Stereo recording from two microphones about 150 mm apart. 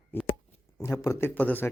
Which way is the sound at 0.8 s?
20° left (ahead or behind).